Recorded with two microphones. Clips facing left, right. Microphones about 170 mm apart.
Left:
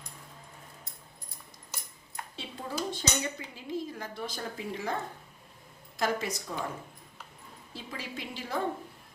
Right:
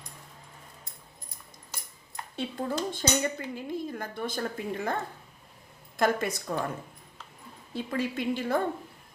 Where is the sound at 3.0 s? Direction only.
55° right (ahead or behind).